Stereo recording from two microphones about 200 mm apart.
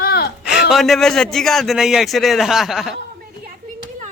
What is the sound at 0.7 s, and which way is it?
A man's voice, centre (ahead or behind).